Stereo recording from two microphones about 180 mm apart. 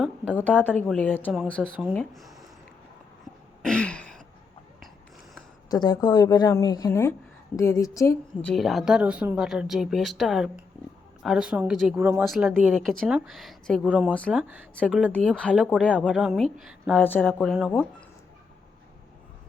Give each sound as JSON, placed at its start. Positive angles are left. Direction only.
{"t": 0.3, "sound": "a woman's voice", "side_deg": 10}
{"t": 3.6, "sound": "throat clearing", "side_deg": 5}
{"t": 5.6, "sound": "a woman's voice", "side_deg": 20}
{"t": 8.4, "sound": "speech", "side_deg": 0}
{"t": 11.9, "sound": "speech", "side_deg": -15}
{"t": 12.2, "sound": "a woman's voice", "side_deg": 0}
{"t": 14.3, "sound": "speech", "side_deg": -10}